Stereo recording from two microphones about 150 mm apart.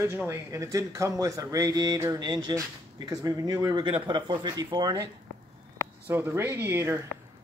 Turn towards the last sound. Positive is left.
turn(degrees=-15)  # may be behind; listen again after turning